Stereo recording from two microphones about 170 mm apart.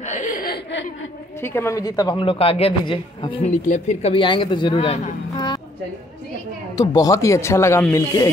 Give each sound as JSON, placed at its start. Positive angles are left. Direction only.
{"t": 0.1, "sound": "a sound", "side_deg": 50}
{"t": 1.4, "sound": "a man's voice", "side_deg": 15}
{"t": 3.6, "sound": "speech", "side_deg": 45}
{"t": 6.8, "sound": "speech", "side_deg": 20}